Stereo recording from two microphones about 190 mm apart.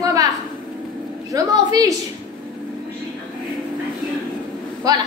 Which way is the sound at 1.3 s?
20° right (ahead or behind).